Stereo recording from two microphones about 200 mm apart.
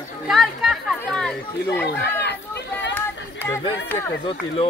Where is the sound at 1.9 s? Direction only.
55° left (ahead or behind).